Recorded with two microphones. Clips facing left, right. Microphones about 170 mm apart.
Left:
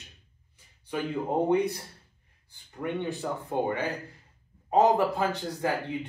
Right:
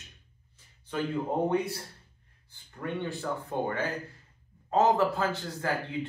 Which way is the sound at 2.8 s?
15° left (ahead or behind).